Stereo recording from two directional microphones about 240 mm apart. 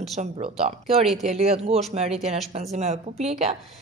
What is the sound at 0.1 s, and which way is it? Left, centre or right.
Speech, right.